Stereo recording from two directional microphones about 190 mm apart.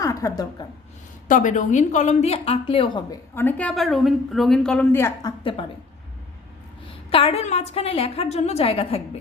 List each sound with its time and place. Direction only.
0.0 s a sound: 15° left (ahead or behind)
1.3 s a woman's voice: 40° left (ahead or behind); by 3.2 s 25° left (ahead or behind)
3.3 s a woman's voice: 10° left (ahead or behind)
5.4 s speech: 30° left (ahead or behind)
7.1 s a woman's voice: 30° left (ahead or behind)